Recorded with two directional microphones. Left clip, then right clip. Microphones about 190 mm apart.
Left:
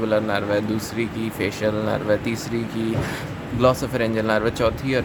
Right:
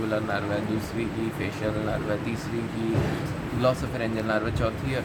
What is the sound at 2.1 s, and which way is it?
Speech, 60° left (ahead or behind).